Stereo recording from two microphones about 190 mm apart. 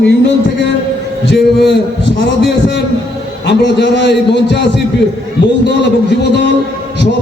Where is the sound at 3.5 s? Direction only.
65° left (ahead or behind).